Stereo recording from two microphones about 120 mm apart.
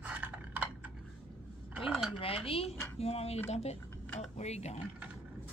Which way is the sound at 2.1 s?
50° left (ahead or behind).